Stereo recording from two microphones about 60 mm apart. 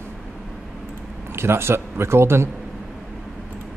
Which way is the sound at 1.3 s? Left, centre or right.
Right.